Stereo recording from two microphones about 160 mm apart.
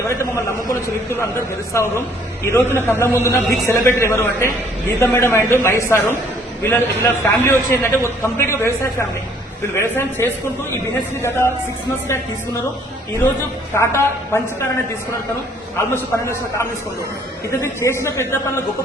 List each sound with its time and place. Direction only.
0.0 s a man's voice: 15° left (ahead or behind)
13.7 s a man's voice: 15° left (ahead or behind)
15.9 s a man's voice: 15° left (ahead or behind)